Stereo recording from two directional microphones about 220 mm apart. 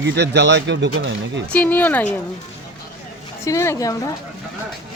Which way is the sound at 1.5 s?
10° left (ahead or behind).